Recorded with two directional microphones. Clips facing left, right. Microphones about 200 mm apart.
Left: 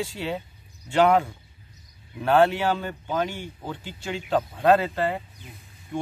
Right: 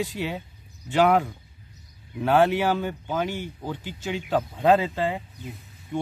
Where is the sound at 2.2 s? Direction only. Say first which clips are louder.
Even; 10° right (ahead or behind).